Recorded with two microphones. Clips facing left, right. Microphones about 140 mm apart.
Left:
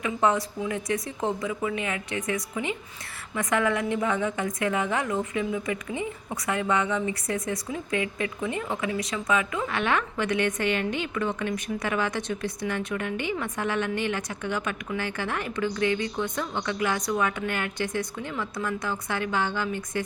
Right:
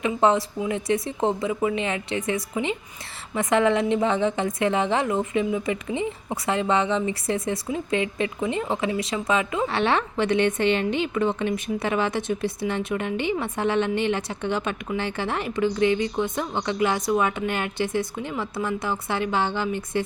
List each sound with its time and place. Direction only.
0.0 s a woman's voice: 25° right (ahead or behind)